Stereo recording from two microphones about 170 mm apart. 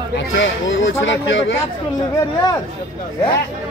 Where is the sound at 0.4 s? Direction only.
90° left.